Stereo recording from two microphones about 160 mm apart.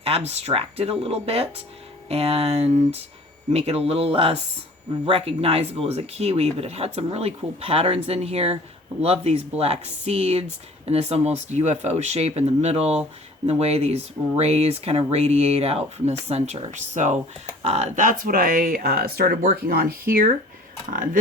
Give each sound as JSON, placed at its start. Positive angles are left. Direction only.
{"t": 0.0, "sound": "speech", "side_deg": -40}
{"t": 19.4, "sound": "speech", "side_deg": -50}
{"t": 19.7, "sound": "speech", "side_deg": -70}